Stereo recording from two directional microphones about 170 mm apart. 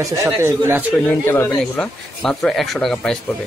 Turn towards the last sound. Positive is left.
turn(degrees=0)  # may be behind; listen again after turning